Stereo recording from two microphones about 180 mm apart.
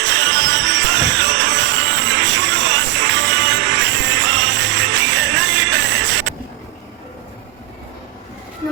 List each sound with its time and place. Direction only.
0.0 s music: 85° right